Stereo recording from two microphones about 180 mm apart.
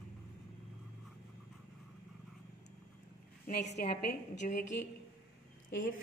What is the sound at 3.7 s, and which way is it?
Speech, 60° left (ahead or behind).